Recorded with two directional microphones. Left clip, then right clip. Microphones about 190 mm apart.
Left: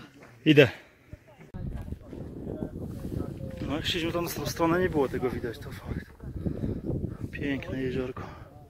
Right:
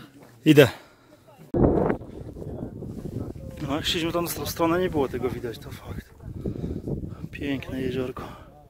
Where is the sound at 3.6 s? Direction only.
40° right (ahead or behind).